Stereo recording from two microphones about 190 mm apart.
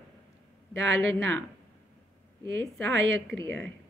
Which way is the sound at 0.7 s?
80° right.